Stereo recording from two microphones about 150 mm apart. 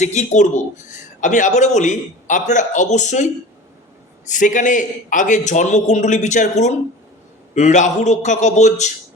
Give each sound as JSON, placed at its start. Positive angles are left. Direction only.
{"t": 0.0, "sound": "speech", "side_deg": 50}
{"t": 4.3, "sound": "a man's voice", "side_deg": 55}